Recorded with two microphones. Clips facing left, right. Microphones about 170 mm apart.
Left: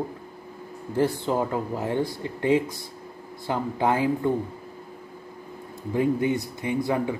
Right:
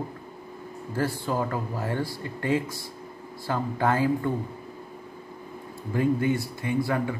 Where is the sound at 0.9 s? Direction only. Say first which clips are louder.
Left 4 dB; 20° left (ahead or behind).